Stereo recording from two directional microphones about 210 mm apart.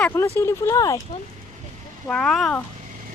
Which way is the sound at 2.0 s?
5° left (ahead or behind).